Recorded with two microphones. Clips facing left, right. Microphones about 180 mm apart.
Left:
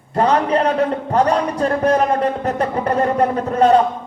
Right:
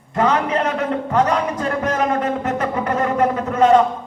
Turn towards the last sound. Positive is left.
turn(degrees=40)  # may be behind; listen again after turning